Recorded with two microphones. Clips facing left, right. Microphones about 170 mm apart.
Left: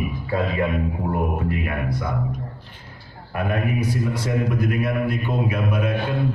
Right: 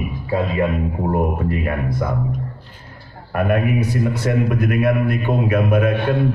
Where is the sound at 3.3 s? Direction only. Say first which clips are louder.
Right 5 dB; 55° right (ahead or behind).